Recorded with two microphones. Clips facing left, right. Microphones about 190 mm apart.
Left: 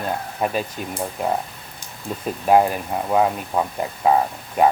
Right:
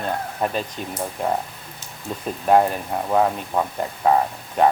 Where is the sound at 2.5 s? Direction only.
5° left (ahead or behind).